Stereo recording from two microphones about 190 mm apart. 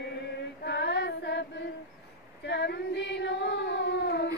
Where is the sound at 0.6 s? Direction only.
65° left (ahead or behind).